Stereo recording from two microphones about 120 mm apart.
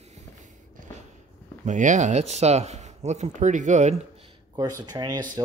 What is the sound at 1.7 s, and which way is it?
Speech, 90° right.